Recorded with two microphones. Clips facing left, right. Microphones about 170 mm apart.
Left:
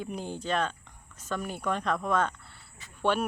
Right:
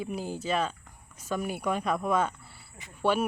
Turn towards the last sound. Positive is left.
turn(degrees=-10)  # may be behind; listen again after turning